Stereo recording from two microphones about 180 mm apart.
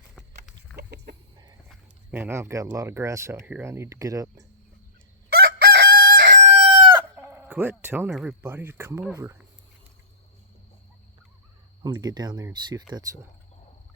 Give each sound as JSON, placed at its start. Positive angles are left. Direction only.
{"t": 0.8, "sound": "chicken", "side_deg": -60}
{"t": 2.0, "sound": "speech", "side_deg": -10}
{"t": 5.3, "sound": "crowing", "side_deg": -60}
{"t": 6.6, "sound": "chicken", "side_deg": -30}
{"t": 7.2, "sound": "speech", "side_deg": -10}
{"t": 11.8, "sound": "speech", "side_deg": -20}